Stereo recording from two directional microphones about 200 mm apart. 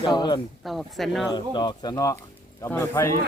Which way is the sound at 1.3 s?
20° left (ahead or behind).